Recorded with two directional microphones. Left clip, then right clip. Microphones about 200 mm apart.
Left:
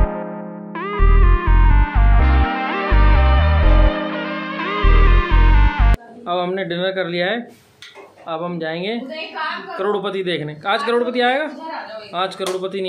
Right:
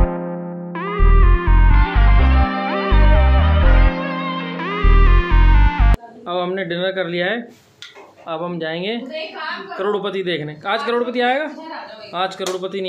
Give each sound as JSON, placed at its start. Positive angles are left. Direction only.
{"t": 0.7, "sound": "music", "side_deg": 0}
{"t": 8.3, "sound": "speech", "side_deg": 0}